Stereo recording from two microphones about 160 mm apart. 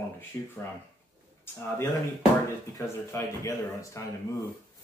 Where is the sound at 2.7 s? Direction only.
20° left (ahead or behind).